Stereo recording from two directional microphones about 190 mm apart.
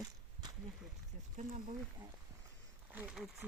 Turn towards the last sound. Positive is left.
turn(degrees=-5)  # may be behind; listen again after turning